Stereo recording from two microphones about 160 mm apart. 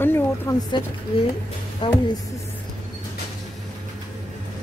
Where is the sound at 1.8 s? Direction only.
35° left (ahead or behind).